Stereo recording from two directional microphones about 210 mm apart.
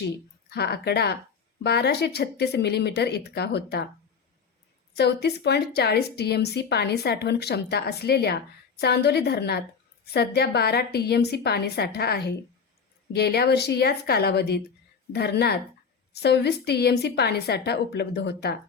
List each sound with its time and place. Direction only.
0.5 s a woman's voice: 50° left (ahead or behind)
4.9 s a woman's voice: 50° left (ahead or behind)